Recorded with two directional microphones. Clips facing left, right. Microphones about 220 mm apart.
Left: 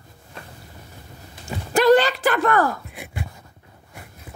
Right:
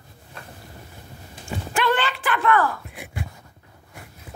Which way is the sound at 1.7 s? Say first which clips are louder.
Left 9 dB; 40° left (ahead or behind).